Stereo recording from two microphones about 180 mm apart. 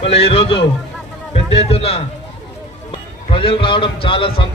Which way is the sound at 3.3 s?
30° left (ahead or behind).